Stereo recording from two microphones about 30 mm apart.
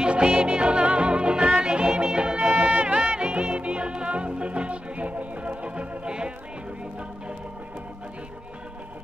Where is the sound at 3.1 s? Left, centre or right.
Right.